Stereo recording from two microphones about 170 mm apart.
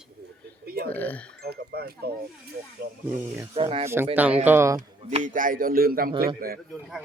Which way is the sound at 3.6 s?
35° right (ahead or behind).